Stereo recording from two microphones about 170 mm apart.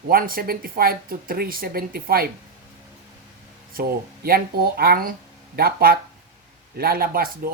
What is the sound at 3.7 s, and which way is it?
Speech, 60° right (ahead or behind).